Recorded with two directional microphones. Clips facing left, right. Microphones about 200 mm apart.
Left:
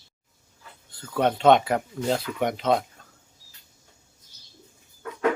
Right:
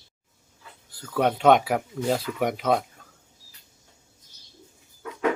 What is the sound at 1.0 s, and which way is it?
Speech, 5° right (ahead or behind).